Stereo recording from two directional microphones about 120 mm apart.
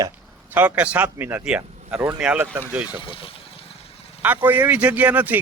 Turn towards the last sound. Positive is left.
turn(degrees=-15)  # may be behind; listen again after turning